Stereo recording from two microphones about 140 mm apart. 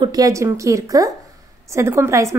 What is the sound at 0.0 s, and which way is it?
A woman's voice, 25° right (ahead or behind).